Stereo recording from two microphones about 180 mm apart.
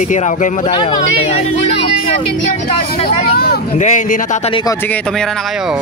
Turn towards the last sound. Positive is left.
turn(degrees=45)  # may be behind; listen again after turning